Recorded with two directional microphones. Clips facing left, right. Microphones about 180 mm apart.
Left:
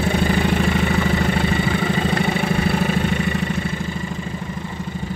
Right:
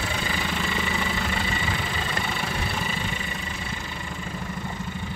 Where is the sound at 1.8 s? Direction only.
60° left (ahead or behind).